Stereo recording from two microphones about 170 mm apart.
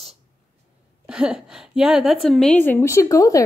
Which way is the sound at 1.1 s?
5° right (ahead or behind).